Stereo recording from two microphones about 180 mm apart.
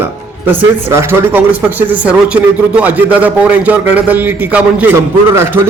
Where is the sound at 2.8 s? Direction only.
10° right (ahead or behind).